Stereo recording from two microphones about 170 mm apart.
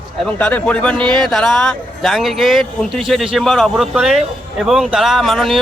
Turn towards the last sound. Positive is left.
turn(degrees=0)  # may be behind; listen again after turning